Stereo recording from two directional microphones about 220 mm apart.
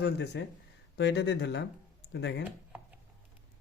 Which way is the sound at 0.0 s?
50° left (ahead or behind).